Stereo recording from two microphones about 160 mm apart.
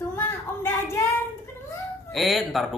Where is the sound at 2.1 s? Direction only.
Centre (ahead or behind).